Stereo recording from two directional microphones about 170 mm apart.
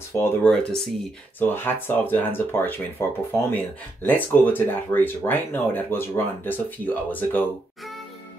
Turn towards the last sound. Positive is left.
turn(degrees=10)  # may be behind; listen again after turning